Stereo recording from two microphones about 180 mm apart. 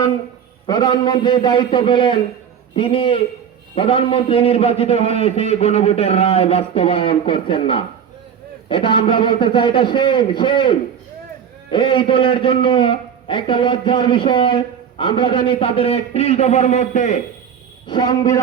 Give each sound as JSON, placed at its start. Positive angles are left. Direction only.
{"t": 0.7, "sound": "a man's voice", "side_deg": 20}
{"t": 17.8, "sound": "a man's voice", "side_deg": 25}